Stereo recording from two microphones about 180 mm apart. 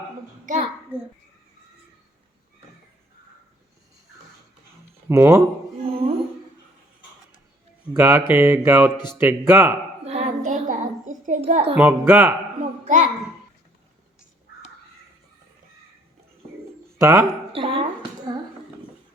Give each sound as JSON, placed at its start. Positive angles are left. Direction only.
{"t": 0.4, "sound": "a sound", "side_deg": -40}
{"t": 0.9, "sound": "mantra", "side_deg": -10}
{"t": 5.0, "sound": "mantra", "side_deg": -15}
{"t": 5.8, "sound": "humming", "side_deg": -30}
{"t": 7.9, "sound": "mantra", "side_deg": -10}
{"t": 10.0, "sound": "a sound", "side_deg": -40}
{"t": 11.8, "sound": "mantra", "side_deg": -10}
{"t": 12.8, "sound": "a sound", "side_deg": -45}
{"t": 17.0, "sound": "speech", "side_deg": -15}
{"t": 17.5, "sound": "speech", "side_deg": -30}